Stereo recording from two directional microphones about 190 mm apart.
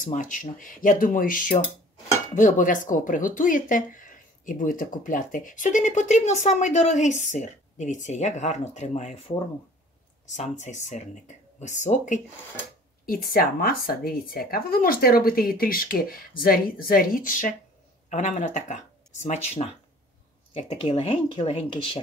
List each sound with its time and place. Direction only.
0.0 s speech: 45° left (ahead or behind)
10.3 s speech: 35° left (ahead or behind)
13.0 s speech: 50° left (ahead or behind); by 22.0 s 25° left (ahead or behind)